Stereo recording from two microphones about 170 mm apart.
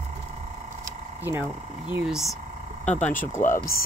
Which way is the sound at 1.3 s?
10° right (ahead or behind).